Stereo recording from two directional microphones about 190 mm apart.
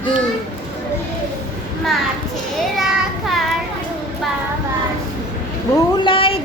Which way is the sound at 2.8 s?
Centre (ahead or behind).